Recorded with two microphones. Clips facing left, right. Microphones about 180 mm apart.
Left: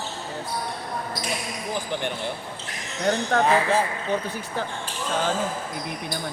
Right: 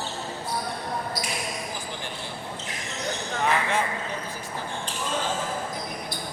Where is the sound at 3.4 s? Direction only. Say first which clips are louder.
Left 2 dB; 35° left (ahead or behind).